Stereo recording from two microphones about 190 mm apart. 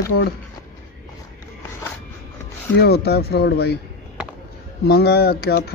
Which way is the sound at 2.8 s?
55° left (ahead or behind).